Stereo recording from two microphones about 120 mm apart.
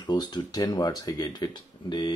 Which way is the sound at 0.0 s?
35° left (ahead or behind).